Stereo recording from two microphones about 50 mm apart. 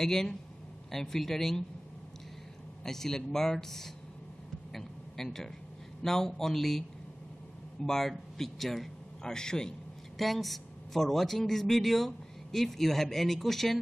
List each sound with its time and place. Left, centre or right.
0.0 s speech: centre
2.8 s speech: centre
4.7 s a sound: centre
6.0 s speech: centre
7.8 s speech: centre
10.1 s speech: centre